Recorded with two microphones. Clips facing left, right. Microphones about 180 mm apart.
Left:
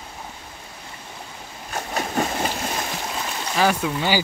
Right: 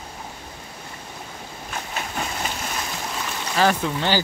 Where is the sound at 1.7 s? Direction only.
40° left (ahead or behind).